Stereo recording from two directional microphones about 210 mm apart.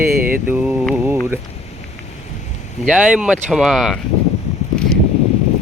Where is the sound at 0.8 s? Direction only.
10° right (ahead or behind).